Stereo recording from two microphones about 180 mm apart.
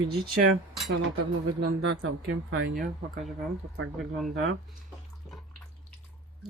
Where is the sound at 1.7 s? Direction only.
85° right.